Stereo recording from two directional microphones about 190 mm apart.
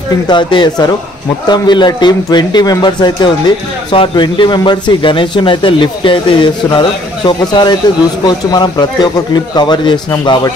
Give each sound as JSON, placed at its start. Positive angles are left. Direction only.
{"t": 0.3, "sound": "speech", "side_deg": 25}